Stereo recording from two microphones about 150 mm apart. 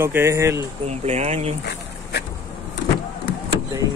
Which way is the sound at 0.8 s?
45° right (ahead or behind).